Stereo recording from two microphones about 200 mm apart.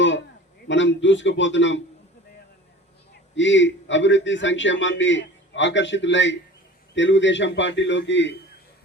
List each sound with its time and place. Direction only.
0.7 s a man's voice: 65° left (ahead or behind)
3.3 s a man's voice: 65° left (ahead or behind)